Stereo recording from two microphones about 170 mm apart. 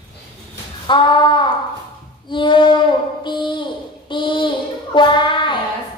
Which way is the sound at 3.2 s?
30° left (ahead or behind).